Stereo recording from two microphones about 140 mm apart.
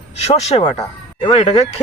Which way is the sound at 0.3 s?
45° left (ahead or behind).